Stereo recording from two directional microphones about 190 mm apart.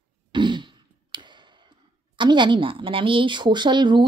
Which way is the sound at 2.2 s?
25° right (ahead or behind).